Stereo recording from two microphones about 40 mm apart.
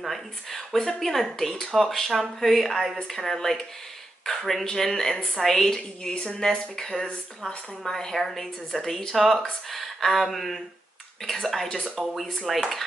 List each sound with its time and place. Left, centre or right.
0.0 s speech: centre
6.0 s speech: left
7.9 s speech: centre
12.5 s speech: centre